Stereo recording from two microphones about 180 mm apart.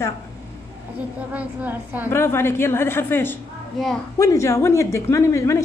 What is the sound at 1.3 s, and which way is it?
Speech, 10° right (ahead or behind).